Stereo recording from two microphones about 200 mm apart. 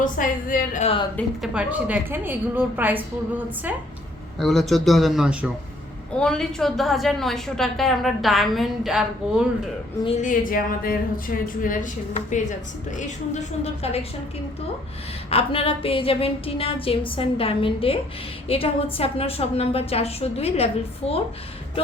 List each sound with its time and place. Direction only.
0.0 s a woman's voice: 45° left (ahead or behind)
1.1 s a woman's voice: 5° right (ahead or behind)
10.2 s a woman's voice: 40° left (ahead or behind)
15.3 s a sound: 30° left (ahead or behind)